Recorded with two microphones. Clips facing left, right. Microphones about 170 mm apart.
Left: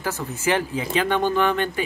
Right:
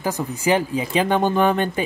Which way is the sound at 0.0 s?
15° right (ahead or behind).